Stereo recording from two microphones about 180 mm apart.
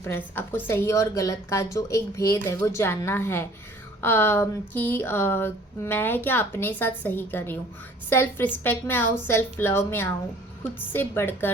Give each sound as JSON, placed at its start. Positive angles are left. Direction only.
{"t": 0.0, "sound": "speech", "side_deg": 10}